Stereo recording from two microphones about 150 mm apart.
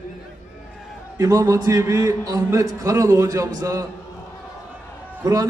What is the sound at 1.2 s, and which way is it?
A man's voice, 20° right (ahead or behind).